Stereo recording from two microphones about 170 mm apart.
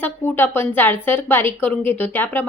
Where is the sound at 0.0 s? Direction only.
10° left (ahead or behind).